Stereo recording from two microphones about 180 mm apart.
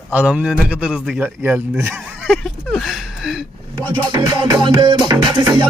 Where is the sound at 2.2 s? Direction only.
Centre (ahead or behind).